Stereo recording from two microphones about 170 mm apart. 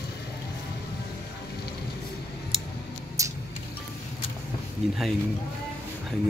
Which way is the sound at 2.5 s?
Centre (ahead or behind).